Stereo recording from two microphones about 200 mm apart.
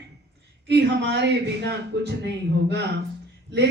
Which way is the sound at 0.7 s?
60° right (ahead or behind).